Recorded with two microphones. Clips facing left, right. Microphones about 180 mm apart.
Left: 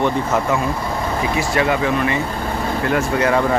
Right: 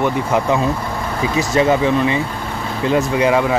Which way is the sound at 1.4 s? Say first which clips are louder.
Right 5 dB; 25° right (ahead or behind).